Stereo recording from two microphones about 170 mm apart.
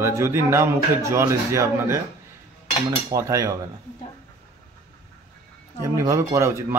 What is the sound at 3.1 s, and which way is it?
Cutlery, 20° right (ahead or behind).